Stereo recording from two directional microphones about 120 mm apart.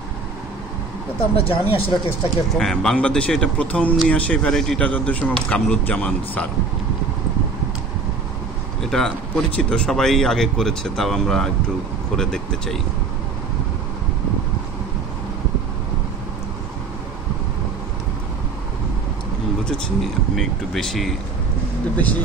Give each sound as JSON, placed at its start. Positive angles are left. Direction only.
{"t": 1.3, "sound": "speech", "side_deg": 50}
{"t": 2.5, "sound": "speech", "side_deg": 5}
{"t": 8.8, "sound": "speech", "side_deg": 5}
{"t": 19.6, "sound": "speech", "side_deg": 0}
{"t": 21.9, "sound": "speech", "side_deg": 10}